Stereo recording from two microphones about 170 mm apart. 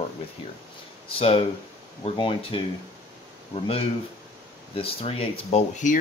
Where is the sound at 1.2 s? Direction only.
35° left (ahead or behind).